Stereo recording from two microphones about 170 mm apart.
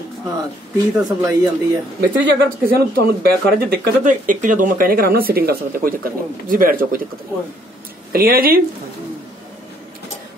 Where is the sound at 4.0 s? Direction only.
50° right (ahead or behind).